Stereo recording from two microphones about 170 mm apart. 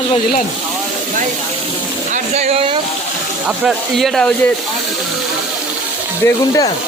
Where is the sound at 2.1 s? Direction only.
40° right (ahead or behind).